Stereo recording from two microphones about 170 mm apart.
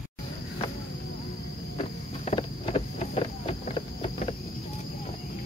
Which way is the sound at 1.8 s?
35° left (ahead or behind).